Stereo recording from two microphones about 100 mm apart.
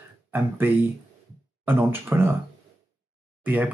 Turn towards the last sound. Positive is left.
turn(degrees=-15)  # may be behind; listen again after turning